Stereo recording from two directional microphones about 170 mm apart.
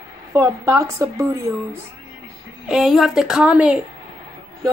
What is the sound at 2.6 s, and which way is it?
Speech, centre (ahead or behind).